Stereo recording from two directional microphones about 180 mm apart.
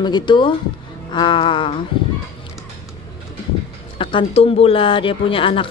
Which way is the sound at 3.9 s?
30° left (ahead or behind).